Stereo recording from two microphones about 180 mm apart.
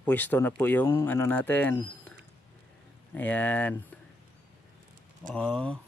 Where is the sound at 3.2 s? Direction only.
10° left (ahead or behind).